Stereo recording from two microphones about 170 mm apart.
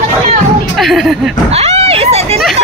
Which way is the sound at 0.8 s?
Centre (ahead or behind).